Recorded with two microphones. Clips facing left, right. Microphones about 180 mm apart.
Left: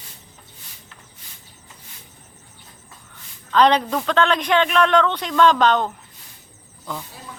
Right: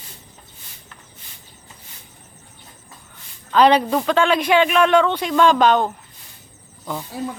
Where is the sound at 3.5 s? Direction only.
10° right (ahead or behind).